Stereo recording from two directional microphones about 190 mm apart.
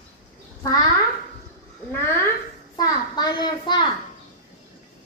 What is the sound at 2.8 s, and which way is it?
A child's voice, 20° left (ahead or behind).